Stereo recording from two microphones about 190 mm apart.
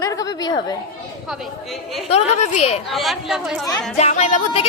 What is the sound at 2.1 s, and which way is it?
Speech, 35° left (ahead or behind).